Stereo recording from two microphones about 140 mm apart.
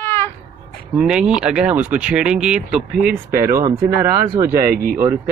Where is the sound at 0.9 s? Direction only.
5° right (ahead or behind).